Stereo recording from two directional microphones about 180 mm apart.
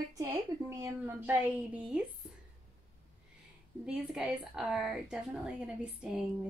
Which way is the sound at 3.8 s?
5° right (ahead or behind).